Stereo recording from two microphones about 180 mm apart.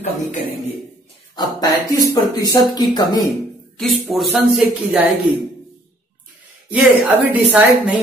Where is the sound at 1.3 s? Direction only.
20° left (ahead or behind).